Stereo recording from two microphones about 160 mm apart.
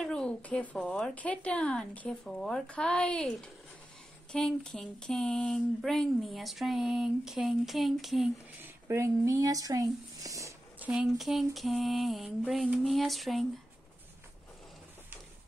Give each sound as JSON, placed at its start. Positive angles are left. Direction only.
{"t": 0.0, "sound": "a woman's voice", "side_deg": 5}
{"t": 8.6, "sound": "speech", "side_deg": -15}
{"t": 10.9, "sound": "speech", "side_deg": -5}